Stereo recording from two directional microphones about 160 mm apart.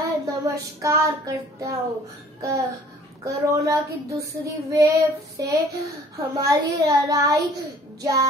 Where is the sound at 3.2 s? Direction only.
20° right (ahead or behind).